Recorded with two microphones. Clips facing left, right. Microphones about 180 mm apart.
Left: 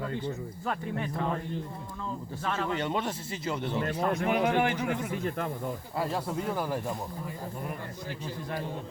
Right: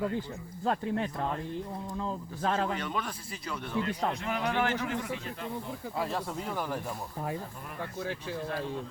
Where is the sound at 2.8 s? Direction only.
25° left (ahead or behind).